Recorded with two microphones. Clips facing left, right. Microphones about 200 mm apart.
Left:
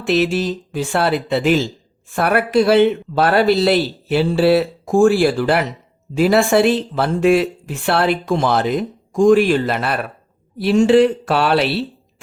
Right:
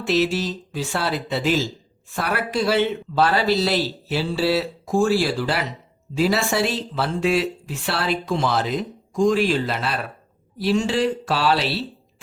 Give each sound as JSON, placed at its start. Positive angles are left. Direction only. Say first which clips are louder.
{"t": 0.0, "sound": "speech", "louder": "left 4 dB", "side_deg": 55}